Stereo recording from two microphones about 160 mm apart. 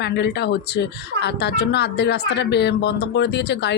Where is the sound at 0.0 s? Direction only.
90° left.